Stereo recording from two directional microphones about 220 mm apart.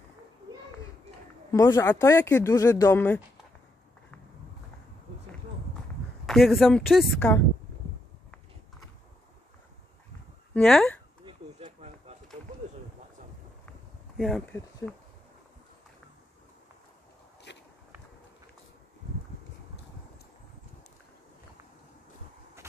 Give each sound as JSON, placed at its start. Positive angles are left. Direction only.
{"t": 1.5, "sound": "speech", "side_deg": 15}
{"t": 6.2, "sound": "a woman's voice", "side_deg": 0}
{"t": 10.5, "sound": "speech", "side_deg": 5}
{"t": 11.2, "sound": "a sound", "side_deg": -30}
{"t": 14.1, "sound": "speech", "side_deg": 0}
{"t": 17.5, "sound": "biting", "side_deg": 50}